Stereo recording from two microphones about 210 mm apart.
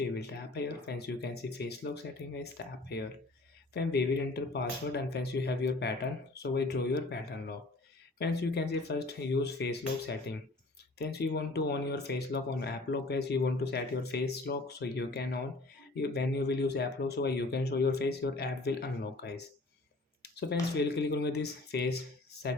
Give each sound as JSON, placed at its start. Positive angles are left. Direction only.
{"t": 0.2, "sound": "speech", "side_deg": 50}
{"t": 20.3, "sound": "speech", "side_deg": 50}